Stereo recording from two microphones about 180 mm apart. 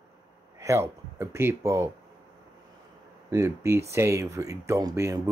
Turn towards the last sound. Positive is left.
turn(degrees=-15)  # may be behind; listen again after turning